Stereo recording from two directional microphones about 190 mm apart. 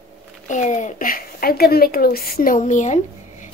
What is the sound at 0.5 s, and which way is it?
A woman's voice, 40° left (ahead or behind).